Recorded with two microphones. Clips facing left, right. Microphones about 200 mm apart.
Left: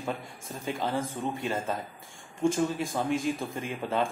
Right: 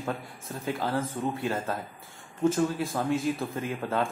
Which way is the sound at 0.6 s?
5° right (ahead or behind).